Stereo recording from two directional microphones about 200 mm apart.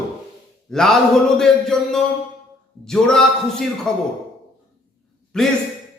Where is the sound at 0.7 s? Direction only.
Centre (ahead or behind).